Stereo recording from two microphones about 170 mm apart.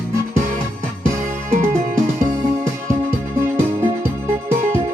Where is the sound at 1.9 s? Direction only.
15° right (ahead or behind).